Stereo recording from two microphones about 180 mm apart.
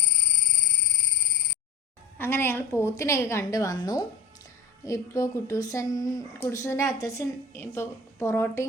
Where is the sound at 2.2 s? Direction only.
15° left (ahead or behind).